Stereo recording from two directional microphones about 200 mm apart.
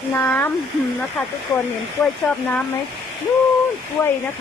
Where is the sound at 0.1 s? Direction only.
10° left (ahead or behind).